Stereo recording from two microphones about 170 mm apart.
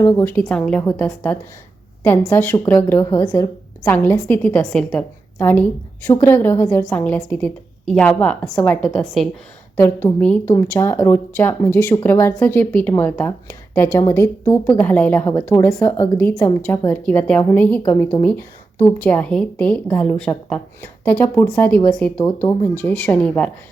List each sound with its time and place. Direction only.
0.0 s a woman's voice: 15° left (ahead or behind)
9.7 s a woman's voice: 15° left (ahead or behind)